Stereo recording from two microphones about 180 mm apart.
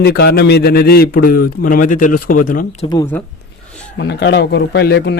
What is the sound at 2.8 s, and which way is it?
Speech, 25° left (ahead or behind).